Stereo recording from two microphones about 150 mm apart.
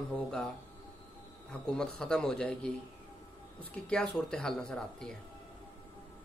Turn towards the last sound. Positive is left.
turn(degrees=5)  # may be behind; listen again after turning